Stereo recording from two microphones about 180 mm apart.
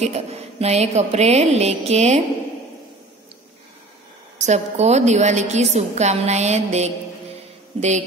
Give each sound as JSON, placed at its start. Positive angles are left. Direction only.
{"t": 0.0, "sound": "a woman's voice", "side_deg": -35}
{"t": 4.4, "sound": "a woman's voice", "side_deg": -40}